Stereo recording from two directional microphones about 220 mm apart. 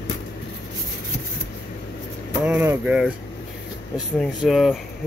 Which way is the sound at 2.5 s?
5° right (ahead or behind).